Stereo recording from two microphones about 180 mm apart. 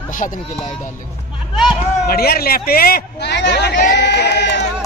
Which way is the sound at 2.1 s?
60° left (ahead or behind).